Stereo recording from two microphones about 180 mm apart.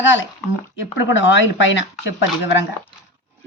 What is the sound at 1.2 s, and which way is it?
Speech, 90° left.